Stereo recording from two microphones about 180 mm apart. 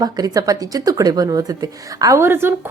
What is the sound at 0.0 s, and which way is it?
A woman's voice, 20° right (ahead or behind).